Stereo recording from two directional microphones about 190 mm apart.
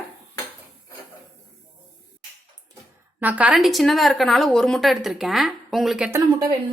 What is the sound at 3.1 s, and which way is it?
A woman's voice, 10° right (ahead or behind).